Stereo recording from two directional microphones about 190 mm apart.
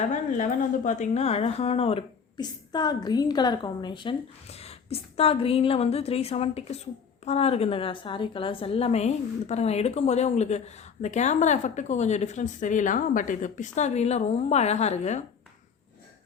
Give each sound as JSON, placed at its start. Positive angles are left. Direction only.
{"t": 0.1, "sound": "speech", "side_deg": 45}